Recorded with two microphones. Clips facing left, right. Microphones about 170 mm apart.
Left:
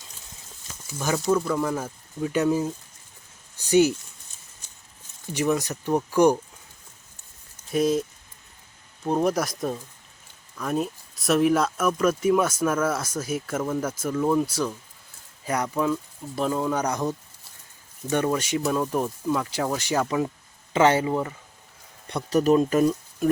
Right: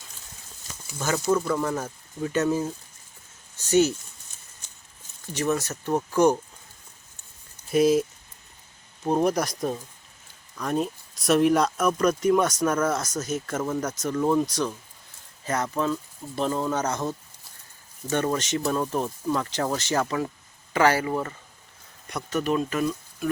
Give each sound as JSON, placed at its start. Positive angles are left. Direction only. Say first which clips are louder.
{"t": 0.9, "sound": "speech", "louder": "left 1 dB", "side_deg": 10}
{"t": 5.3, "sound": "speech", "louder": "left 2 dB", "side_deg": 15}
{"t": 7.7, "sound": "speech", "louder": "right 3 dB", "side_deg": 0}
{"t": 9.0, "sound": "speech", "louder": "even", "side_deg": 0}
{"t": 18.3, "sound": "speech", "louder": "left 1 dB", "side_deg": 10}
{"t": 22.1, "sound": "speech", "louder": "left 6 dB", "side_deg": 35}